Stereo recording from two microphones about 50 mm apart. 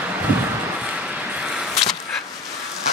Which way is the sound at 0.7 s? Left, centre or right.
Centre.